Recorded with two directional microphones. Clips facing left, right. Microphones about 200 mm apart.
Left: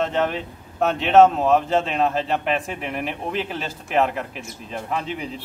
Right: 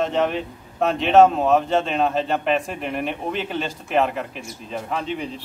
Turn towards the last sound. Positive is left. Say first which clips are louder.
# right 1 dB
turn(degrees=5)  # may be behind; listen again after turning